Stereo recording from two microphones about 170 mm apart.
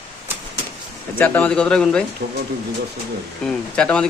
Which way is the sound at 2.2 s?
85° right.